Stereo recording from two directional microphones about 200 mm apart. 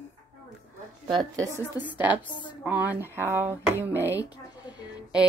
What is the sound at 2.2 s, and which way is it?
Speech, 25° left (ahead or behind).